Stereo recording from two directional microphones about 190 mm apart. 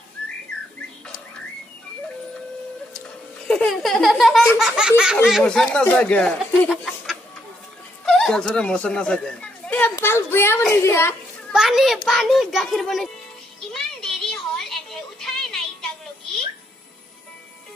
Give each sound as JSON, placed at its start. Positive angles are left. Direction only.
{"t": 3.4, "sound": "speech", "side_deg": 5}
{"t": 6.7, "sound": "a sound", "side_deg": 0}
{"t": 8.0, "sound": "a child's voice", "side_deg": 0}
{"t": 11.5, "sound": "speech", "side_deg": -5}
{"t": 13.7, "sound": "music", "side_deg": 0}